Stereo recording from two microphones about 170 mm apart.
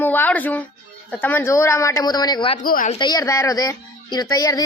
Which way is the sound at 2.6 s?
55° left (ahead or behind).